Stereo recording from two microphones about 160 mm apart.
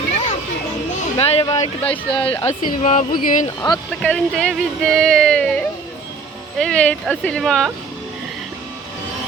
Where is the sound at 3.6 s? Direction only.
25° left (ahead or behind).